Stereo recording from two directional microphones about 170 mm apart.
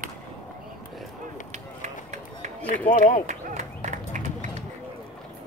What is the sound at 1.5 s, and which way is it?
Run, 45° right (ahead or behind).